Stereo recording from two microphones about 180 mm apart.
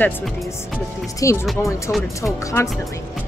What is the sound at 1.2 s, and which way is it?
Speech, 15° left (ahead or behind).